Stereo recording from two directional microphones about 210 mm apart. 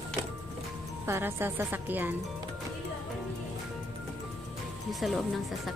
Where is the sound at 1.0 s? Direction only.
10° right (ahead or behind).